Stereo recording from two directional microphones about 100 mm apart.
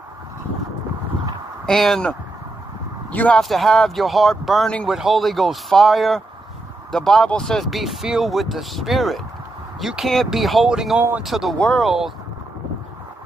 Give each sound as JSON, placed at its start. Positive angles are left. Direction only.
{"t": 1.7, "sound": "speech", "side_deg": 5}
{"t": 3.3, "sound": "speech", "side_deg": 0}
{"t": 11.0, "sound": "speech", "side_deg": -20}
{"t": 11.2, "sound": "speech", "side_deg": 0}
{"t": 11.5, "sound": "speech", "side_deg": 10}
{"t": 11.8, "sound": "speech", "side_deg": -5}